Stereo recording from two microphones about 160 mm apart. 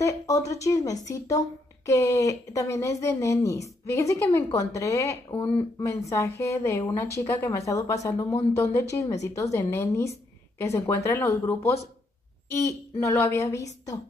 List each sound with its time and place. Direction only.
0.0 s speech: 20° left (ahead or behind)